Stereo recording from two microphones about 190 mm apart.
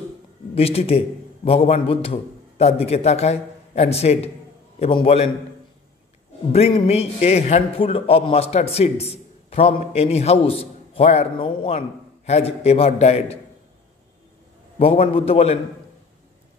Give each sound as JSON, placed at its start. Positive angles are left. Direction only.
{"t": 0.6, "sound": "a man's voice", "side_deg": 30}
{"t": 6.5, "sound": "a man's voice", "side_deg": 35}
{"t": 14.8, "sound": "a man's voice", "side_deg": 30}